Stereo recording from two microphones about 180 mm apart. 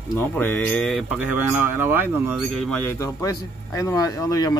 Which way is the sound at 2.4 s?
Centre (ahead or behind).